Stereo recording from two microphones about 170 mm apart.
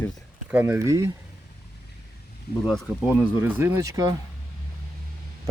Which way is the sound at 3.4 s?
10° right (ahead or behind).